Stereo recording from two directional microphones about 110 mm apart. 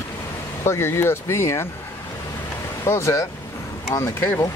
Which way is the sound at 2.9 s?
25° left (ahead or behind).